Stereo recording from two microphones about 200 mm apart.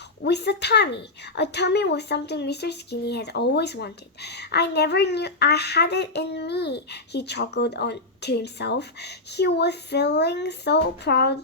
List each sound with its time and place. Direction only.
0.2 s a woman's voice: 55° left (ahead or behind)